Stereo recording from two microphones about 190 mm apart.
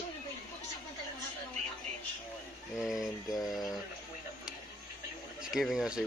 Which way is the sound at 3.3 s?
20° left (ahead or behind).